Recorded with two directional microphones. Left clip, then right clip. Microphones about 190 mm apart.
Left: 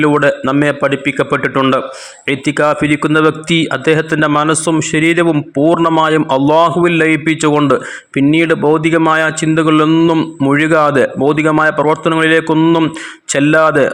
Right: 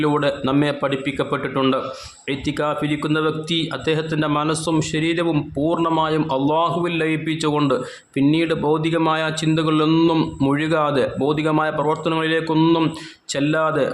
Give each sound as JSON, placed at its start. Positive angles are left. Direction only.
{"t": 0.0, "sound": "a man's voice", "side_deg": 25}
{"t": 10.5, "sound": "a man's voice", "side_deg": 25}
{"t": 12.5, "sound": "a man's voice", "side_deg": 15}
{"t": 13.3, "sound": "speech", "side_deg": 30}